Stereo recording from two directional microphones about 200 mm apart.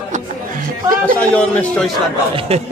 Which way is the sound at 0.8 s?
45° right (ahead or behind).